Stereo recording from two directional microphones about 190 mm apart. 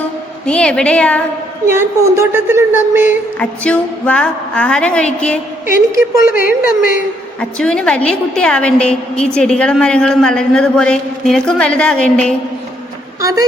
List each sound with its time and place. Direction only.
0.4 s a woman's voice: 5° left (ahead or behind)
1.6 s a woman's voice: 15° right (ahead or behind)
3.6 s a woman's voice: 5° left (ahead or behind)
5.9 s a woman's voice: 50° left (ahead or behind)
7.6 s a woman's voice: 5° left (ahead or behind)